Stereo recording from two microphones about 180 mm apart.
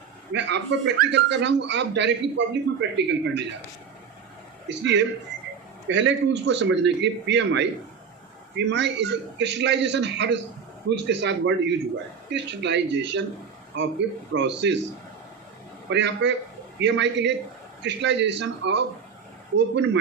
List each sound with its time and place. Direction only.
0.3 s a man's voice: 80° right
4.7 s a man's voice: 85° right
15.9 s a man's voice: 80° right